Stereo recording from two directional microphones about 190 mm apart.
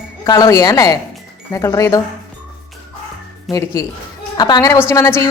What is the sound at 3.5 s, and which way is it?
A woman's voice, 20° left (ahead or behind).